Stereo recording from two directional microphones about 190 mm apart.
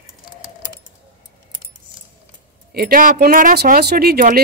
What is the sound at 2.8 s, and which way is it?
Speech, 50° right (ahead or behind).